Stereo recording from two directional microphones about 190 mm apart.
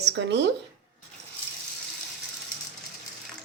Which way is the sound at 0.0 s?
65° right (ahead or behind).